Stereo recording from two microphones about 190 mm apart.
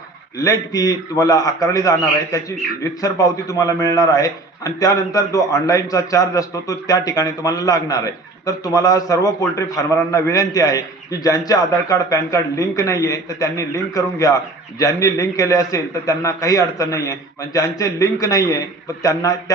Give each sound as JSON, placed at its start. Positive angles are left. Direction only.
{"t": 0.3, "sound": "a man's voice", "side_deg": 20}